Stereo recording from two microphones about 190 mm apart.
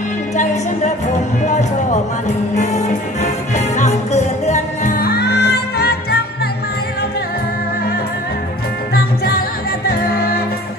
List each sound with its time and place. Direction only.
0.4 s music: 40° left (ahead or behind); by 6.1 s 55° left (ahead or behind)
8.9 s music: 50° left (ahead or behind)